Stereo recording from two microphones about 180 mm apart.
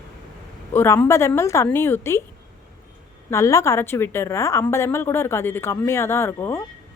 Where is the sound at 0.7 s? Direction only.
15° left (ahead or behind).